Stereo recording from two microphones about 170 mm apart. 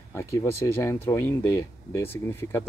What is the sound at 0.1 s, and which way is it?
Speech, 15° left (ahead or behind).